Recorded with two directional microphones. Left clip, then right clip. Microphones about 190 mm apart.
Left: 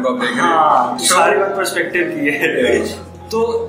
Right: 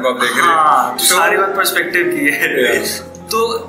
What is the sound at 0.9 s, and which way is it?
A man's voice, 15° left (ahead or behind).